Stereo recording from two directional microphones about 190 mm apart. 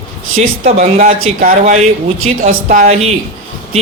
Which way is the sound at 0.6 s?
40° right (ahead or behind).